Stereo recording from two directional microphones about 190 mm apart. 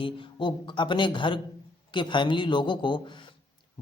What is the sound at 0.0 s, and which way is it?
Speech, 25° left (ahead or behind).